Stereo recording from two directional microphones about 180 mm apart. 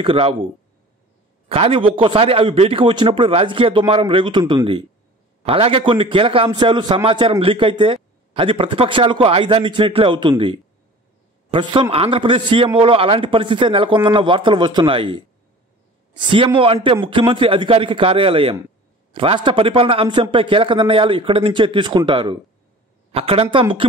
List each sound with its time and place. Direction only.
0.0 s a man's voice: 30° right (ahead or behind)
1.5 s a man's voice: 30° right (ahead or behind)